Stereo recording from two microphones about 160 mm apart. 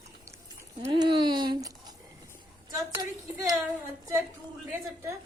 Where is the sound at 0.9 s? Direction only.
30° right (ahead or behind).